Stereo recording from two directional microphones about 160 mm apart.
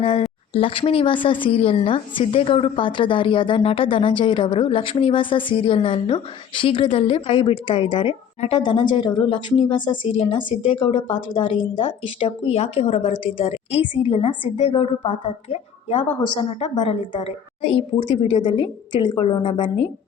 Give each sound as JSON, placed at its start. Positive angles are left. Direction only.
{"t": 0.0, "sound": "a woman's voice", "side_deg": 35}